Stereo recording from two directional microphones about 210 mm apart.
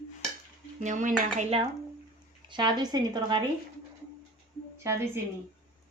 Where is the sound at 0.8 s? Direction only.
35° right (ahead or behind).